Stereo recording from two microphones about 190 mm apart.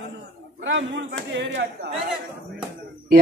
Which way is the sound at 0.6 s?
70° right (ahead or behind).